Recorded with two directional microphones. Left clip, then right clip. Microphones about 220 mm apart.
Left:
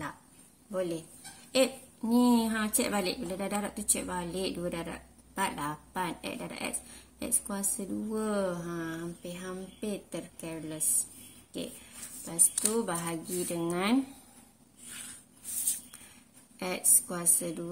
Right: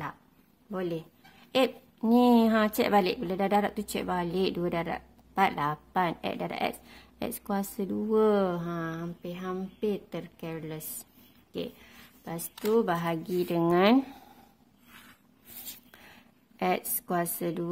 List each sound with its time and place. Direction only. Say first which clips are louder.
0.7 s a woman's voice: even; 40° right (ahead or behind)
11.5 s a sound: right 3 dB; 45° right (ahead or behind)
12.6 s a woman's voice: right 10 dB; 40° right (ahead or behind)
16.5 s a woman's voice: right 3 dB; 45° right (ahead or behind)